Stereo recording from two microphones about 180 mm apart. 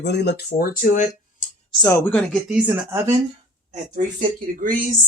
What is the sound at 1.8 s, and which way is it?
Speech, 15° left (ahead or behind).